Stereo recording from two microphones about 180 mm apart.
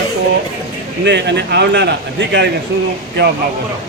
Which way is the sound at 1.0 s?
70° right (ahead or behind).